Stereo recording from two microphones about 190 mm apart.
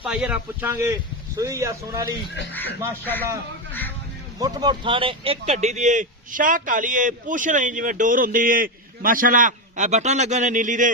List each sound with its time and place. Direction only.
0.0 s speech: 5° right (ahead or behind)
2.5 s a man's voice: 10° left (ahead or behind)
4.4 s speech: 20° right (ahead or behind); by 10.9 s 40° right (ahead or behind)